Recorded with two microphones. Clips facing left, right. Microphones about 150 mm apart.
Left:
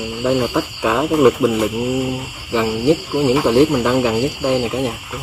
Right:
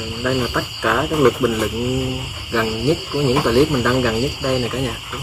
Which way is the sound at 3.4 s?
15° left (ahead or behind).